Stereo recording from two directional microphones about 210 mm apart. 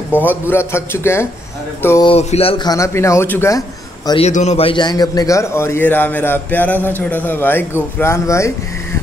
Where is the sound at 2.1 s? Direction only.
30° left (ahead or behind).